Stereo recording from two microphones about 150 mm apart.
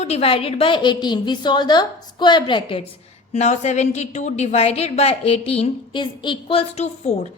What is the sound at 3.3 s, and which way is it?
A woman's voice, 50° left (ahead or behind).